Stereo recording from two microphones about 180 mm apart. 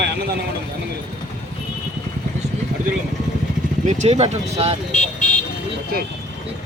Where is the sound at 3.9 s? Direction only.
40° right (ahead or behind).